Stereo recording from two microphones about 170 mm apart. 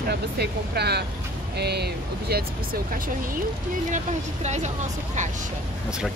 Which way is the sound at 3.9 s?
45° right (ahead or behind).